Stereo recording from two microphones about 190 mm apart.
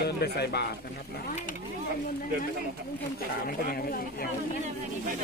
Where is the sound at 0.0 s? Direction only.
60° left (ahead or behind).